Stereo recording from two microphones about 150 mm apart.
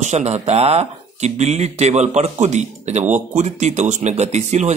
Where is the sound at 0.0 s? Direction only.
50° right (ahead or behind).